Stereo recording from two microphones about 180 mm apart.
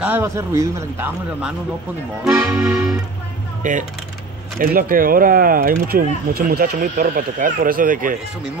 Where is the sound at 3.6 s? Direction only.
45° right (ahead or behind).